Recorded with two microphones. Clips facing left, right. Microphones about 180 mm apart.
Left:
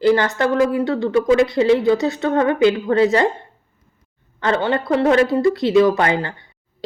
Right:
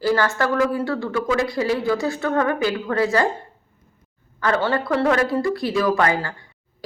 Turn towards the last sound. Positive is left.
turn(degrees=20)  # may be behind; listen again after turning